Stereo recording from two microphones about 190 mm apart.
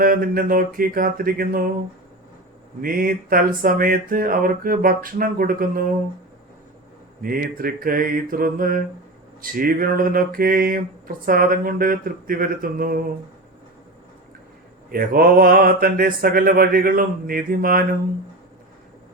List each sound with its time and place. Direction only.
0.0 s mantra: 50° right (ahead or behind)
2.8 s mantra: 50° right (ahead or behind)
7.2 s mantra: 50° right (ahead or behind)
14.8 s mantra: 50° right (ahead or behind)